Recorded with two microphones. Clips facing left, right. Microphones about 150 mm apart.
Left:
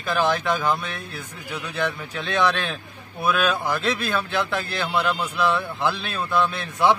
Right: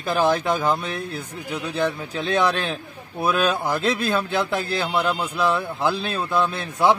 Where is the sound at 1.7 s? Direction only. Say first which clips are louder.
Right 3 dB; 35° right (ahead or behind).